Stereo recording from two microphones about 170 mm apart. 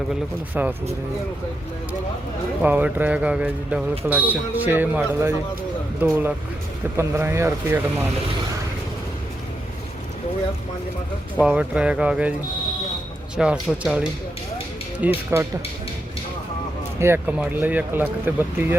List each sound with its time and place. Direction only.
0.6 s speech: 10° right (ahead or behind)
2.6 s speech: 10° right (ahead or behind)
11.4 s speech: 5° right (ahead or behind)
13.3 s speech: 5° right (ahead or behind)
15.0 s speech: 15° right (ahead or behind)
17.0 s speech: 10° right (ahead or behind)